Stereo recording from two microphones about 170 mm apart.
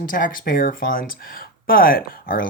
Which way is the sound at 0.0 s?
55° left (ahead or behind).